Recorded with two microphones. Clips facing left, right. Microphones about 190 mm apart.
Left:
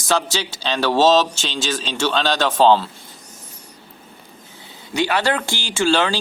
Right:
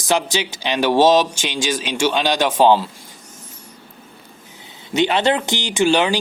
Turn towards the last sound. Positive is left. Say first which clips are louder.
# right 2 dB
turn(degrees=-15)  # may be behind; listen again after turning